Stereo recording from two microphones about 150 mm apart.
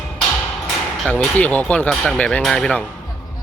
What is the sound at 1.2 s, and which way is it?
Speech, 10° left (ahead or behind).